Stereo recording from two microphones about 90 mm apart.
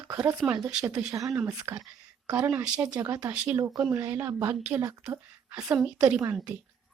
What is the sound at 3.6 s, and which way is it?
Speech, 35° right (ahead or behind).